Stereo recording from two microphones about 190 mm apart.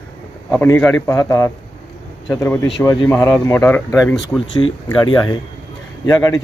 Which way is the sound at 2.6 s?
20° left (ahead or behind).